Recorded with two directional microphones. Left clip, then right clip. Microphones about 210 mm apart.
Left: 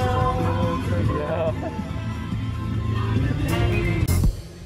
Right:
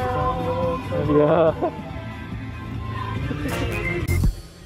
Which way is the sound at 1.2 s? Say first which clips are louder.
Right 10 dB; 30° right (ahead or behind).